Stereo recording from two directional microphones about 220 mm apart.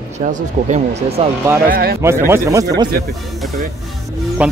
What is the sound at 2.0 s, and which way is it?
Speech, 10° right (ahead or behind).